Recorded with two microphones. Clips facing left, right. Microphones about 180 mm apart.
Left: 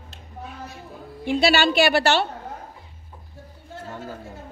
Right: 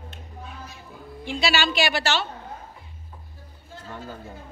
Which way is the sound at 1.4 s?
55° left (ahead or behind).